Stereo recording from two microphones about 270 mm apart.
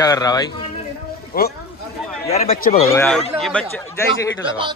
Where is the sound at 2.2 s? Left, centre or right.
Left.